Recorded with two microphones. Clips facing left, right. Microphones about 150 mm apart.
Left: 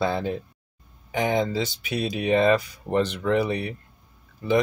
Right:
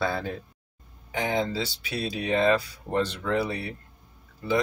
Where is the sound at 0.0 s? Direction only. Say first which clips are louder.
Left 4 dB; 20° left (ahead or behind).